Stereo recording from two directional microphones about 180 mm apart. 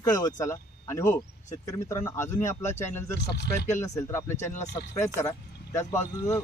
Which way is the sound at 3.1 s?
65° left (ahead or behind).